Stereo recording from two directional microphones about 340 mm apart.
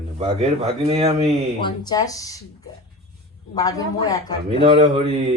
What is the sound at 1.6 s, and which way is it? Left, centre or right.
A man's voice, centre.